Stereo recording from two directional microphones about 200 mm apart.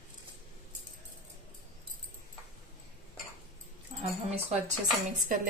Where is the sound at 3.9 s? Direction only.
30° right (ahead or behind).